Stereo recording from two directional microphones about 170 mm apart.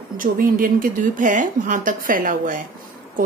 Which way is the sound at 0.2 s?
55° right (ahead or behind).